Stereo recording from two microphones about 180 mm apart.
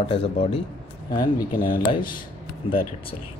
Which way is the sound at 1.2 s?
50° left (ahead or behind).